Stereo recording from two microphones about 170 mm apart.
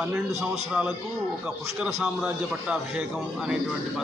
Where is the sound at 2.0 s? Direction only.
5° right (ahead or behind).